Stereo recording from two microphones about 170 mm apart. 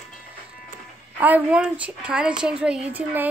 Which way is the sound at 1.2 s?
10° right (ahead or behind).